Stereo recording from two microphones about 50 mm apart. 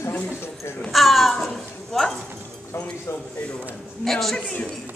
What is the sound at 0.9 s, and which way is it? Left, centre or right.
Speech, centre.